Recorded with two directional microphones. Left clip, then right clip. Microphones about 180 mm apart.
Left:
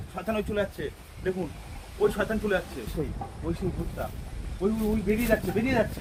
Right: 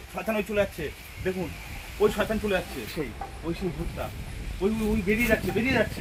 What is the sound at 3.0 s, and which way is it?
Speech, 5° right (ahead or behind).